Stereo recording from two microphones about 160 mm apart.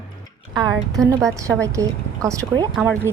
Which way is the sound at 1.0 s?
25° right (ahead or behind).